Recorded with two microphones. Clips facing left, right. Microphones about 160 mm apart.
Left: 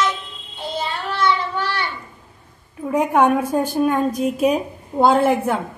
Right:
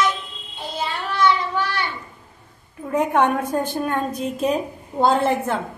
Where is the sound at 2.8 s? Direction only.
10° left (ahead or behind).